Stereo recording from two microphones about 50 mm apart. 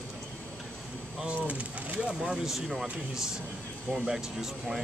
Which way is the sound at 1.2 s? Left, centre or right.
Right.